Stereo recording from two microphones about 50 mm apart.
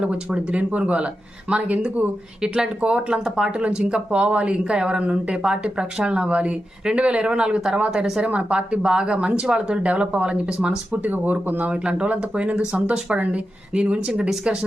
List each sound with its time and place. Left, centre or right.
0.0 s speech: right
8.2 s speech: right
11.7 s speech: centre